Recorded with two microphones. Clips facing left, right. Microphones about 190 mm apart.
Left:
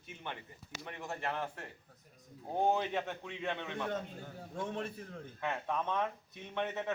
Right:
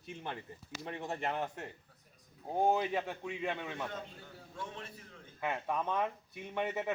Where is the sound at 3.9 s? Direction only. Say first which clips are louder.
Left 6 dB; 50° left (ahead or behind).